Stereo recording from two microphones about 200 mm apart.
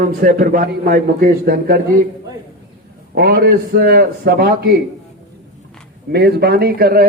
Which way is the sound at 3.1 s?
50° right (ahead or behind).